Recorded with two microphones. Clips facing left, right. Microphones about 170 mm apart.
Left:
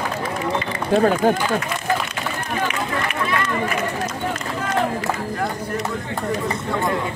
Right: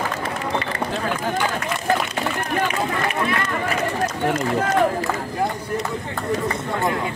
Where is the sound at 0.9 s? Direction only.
45° left (ahead or behind).